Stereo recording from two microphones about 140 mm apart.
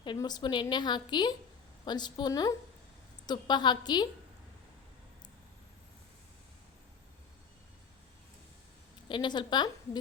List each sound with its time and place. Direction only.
0.2 s a woman's voice: 30° left (ahead or behind)
9.0 s a woman's voice: 35° left (ahead or behind)